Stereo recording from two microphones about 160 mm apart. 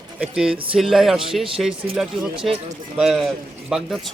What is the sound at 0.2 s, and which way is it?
Speech, 5° right (ahead or behind).